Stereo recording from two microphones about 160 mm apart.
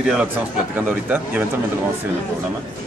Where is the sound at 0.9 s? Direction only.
10° right (ahead or behind).